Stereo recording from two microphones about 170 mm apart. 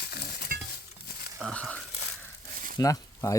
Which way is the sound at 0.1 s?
70° left (ahead or behind).